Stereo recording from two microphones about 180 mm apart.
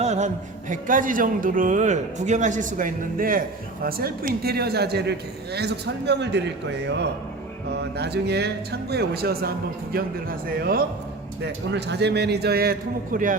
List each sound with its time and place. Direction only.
0.0 s a sound: 40° right (ahead or behind)
0.7 s a man's voice: 50° right (ahead or behind)
11.4 s a man's voice: 70° right (ahead or behind); by 13.3 s 50° right (ahead or behind)